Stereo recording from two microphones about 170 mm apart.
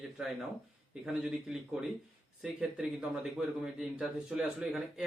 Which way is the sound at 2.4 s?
5° right (ahead or behind).